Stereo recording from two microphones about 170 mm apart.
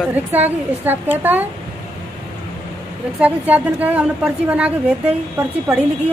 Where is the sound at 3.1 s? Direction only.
10° right (ahead or behind).